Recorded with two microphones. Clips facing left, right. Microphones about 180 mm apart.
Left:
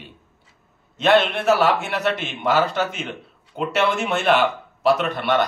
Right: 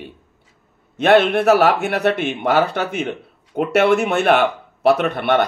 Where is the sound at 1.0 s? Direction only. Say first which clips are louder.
Right 4 dB; 55° right (ahead or behind).